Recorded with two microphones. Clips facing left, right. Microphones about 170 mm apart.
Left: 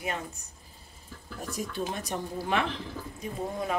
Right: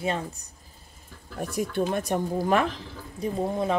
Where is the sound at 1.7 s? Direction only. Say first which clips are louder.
Right 9 dB; 55° right (ahead or behind).